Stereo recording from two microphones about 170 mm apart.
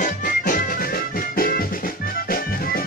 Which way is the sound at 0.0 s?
50° left (ahead or behind).